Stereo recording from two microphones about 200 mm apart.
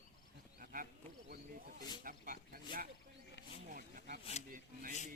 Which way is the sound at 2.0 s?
45° right (ahead or behind).